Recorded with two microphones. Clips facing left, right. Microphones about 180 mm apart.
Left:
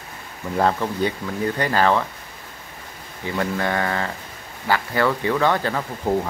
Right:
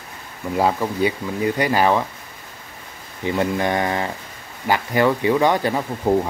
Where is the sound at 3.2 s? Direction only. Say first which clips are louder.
Right 3 dB; 20° right (ahead or behind).